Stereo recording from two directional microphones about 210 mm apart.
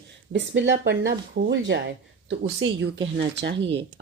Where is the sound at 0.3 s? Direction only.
55° right (ahead or behind).